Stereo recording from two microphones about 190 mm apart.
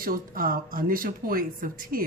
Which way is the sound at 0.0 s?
50° right (ahead or behind).